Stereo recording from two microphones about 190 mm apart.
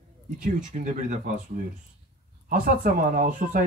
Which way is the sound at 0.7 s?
40° right (ahead or behind).